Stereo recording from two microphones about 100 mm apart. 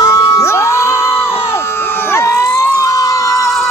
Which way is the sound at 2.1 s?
30° left (ahead or behind).